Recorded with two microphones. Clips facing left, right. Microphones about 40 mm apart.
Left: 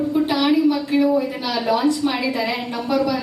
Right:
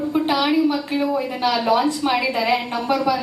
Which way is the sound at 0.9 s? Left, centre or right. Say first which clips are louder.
Left 4 dB; right.